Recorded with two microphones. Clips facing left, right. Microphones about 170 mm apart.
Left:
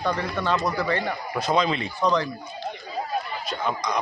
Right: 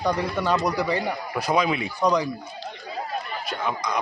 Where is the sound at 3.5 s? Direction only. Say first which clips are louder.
Even; 5° right (ahead or behind).